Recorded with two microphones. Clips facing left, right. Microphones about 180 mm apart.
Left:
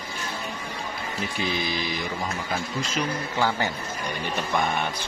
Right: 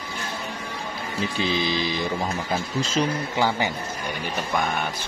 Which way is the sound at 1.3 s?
30° right (ahead or behind).